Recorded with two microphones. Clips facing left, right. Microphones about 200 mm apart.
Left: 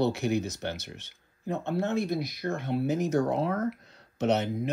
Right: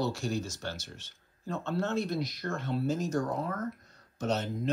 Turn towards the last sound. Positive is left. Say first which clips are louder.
# left 5 dB
turn(degrees=65)  # may be behind; listen again after turning